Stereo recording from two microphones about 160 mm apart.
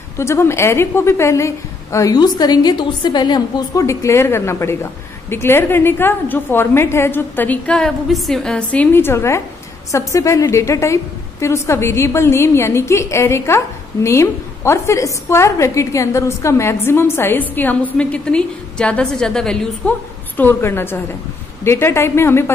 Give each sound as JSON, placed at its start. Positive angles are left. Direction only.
{"t": 0.2, "sound": "a woman's voice", "side_deg": 15}